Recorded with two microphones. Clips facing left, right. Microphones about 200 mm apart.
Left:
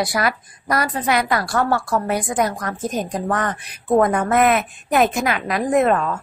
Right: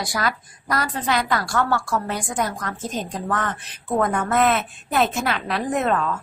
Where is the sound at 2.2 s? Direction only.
15° left (ahead or behind).